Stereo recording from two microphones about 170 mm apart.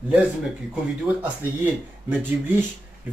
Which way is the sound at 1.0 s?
10° right (ahead or behind).